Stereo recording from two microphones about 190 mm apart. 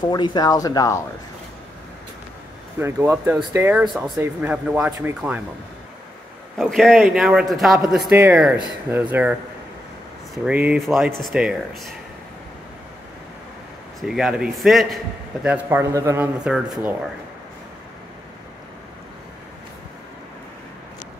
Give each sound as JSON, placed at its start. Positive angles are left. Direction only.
{"t": 0.1, "sound": "speech", "side_deg": 20}
{"t": 2.8, "sound": "speech", "side_deg": -15}
{"t": 6.5, "sound": "a man's voice", "side_deg": 0}
{"t": 10.3, "sound": "a man's voice", "side_deg": -5}
{"t": 14.0, "sound": "a man's voice", "side_deg": 0}